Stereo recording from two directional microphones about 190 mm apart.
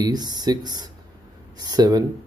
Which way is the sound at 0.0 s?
20° right (ahead or behind).